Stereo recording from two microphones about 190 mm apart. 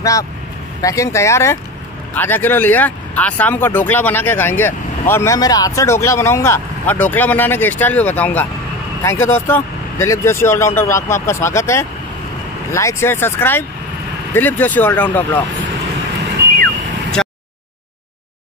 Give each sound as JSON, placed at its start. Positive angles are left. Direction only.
{"t": 0.0, "sound": "speech", "side_deg": 15}